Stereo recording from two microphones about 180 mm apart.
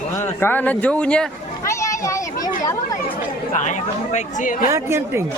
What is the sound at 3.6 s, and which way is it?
Speech, 45° left (ahead or behind).